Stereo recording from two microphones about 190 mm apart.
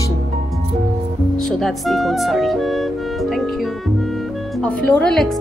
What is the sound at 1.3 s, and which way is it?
A woman's voice, centre (ahead or behind).